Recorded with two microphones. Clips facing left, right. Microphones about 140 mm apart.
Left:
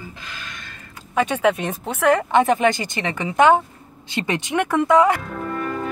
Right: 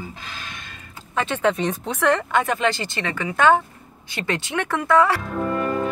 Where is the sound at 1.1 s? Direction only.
10° left (ahead or behind).